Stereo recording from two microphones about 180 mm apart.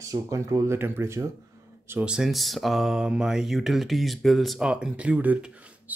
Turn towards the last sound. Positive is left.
turn(degrees=-10)  # may be behind; listen again after turning